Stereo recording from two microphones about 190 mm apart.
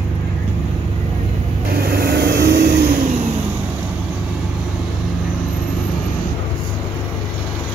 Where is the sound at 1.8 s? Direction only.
55° right (ahead or behind).